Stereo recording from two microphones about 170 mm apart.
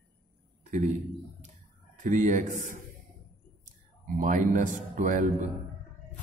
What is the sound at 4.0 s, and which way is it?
A man's voice, 50° right (ahead or behind).